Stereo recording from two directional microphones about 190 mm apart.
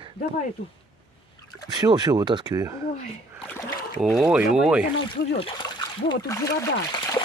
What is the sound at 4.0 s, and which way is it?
Speech, centre (ahead or behind).